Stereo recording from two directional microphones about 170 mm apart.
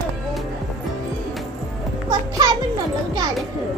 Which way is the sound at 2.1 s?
25° right (ahead or behind).